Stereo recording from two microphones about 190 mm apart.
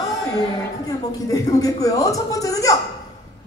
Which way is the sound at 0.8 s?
20° left (ahead or behind).